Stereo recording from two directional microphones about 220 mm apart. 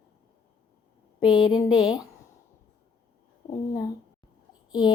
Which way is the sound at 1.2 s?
20° left (ahead or behind).